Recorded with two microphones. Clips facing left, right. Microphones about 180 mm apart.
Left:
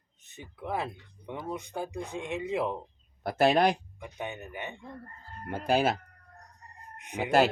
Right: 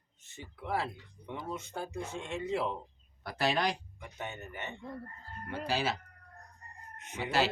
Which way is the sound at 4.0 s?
15° left (ahead or behind).